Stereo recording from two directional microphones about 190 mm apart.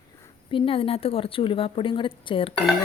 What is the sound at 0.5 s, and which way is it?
Speech, 30° left (ahead or behind).